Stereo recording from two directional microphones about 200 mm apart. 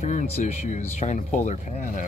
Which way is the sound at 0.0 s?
40° left (ahead or behind).